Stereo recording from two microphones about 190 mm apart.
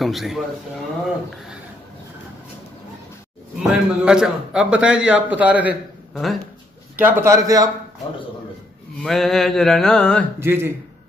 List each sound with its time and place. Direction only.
0.0 s a man's voice: centre (ahead or behind)
3.6 s a man's voice: 5° right (ahead or behind)
9.0 s a man's voice: centre (ahead or behind)
10.4 s a man's voice: 10° right (ahead or behind)